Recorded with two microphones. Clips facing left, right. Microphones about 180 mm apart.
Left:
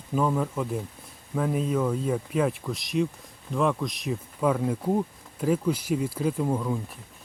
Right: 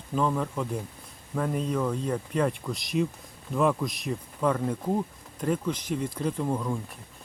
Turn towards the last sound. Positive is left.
turn(degrees=5)  # may be behind; listen again after turning